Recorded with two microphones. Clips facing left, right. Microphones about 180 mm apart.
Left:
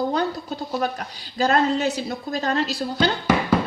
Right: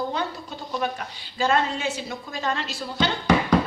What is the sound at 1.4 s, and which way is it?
A woman's voice, 40° left (ahead or behind).